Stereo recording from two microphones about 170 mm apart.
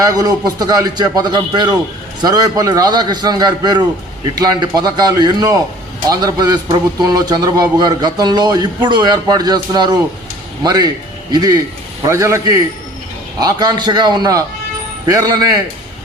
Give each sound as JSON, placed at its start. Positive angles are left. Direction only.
{"t": 0.0, "sound": "a man's voice", "side_deg": -20}